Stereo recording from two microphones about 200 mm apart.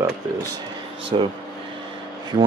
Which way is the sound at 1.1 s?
25° right (ahead or behind).